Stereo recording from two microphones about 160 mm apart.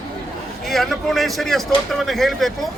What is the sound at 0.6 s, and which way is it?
Speech, centre (ahead or behind).